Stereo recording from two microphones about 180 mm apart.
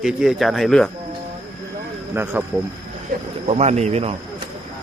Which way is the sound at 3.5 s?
35° right (ahead or behind).